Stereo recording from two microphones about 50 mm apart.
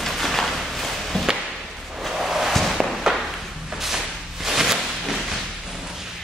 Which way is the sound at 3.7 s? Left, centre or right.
Centre.